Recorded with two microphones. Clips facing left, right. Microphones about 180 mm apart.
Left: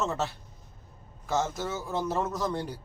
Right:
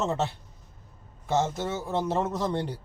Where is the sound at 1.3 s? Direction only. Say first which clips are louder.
Right 3 dB; 25° right (ahead or behind).